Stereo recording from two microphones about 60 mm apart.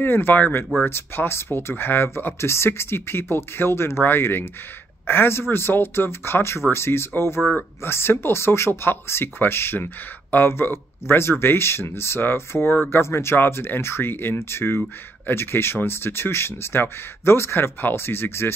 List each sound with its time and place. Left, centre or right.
0.0 s speech: left